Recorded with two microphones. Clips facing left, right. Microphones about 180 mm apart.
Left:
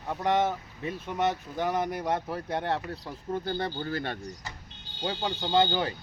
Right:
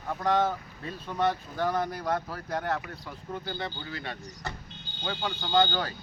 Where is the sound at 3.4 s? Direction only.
50° left (ahead or behind).